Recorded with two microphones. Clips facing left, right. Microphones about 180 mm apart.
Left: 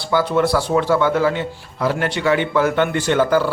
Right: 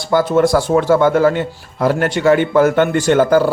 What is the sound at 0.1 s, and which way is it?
A man's voice, 45° right (ahead or behind).